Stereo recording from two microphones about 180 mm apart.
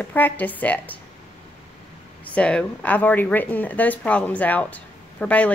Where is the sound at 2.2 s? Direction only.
5° left (ahead or behind).